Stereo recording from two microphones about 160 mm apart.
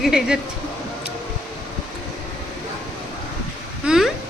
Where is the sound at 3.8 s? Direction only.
Centre (ahead or behind).